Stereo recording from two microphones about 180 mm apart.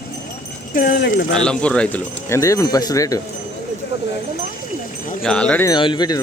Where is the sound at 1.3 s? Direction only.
5° left (ahead or behind).